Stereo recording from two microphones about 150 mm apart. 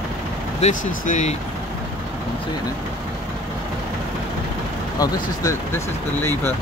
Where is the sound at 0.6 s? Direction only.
60° left (ahead or behind).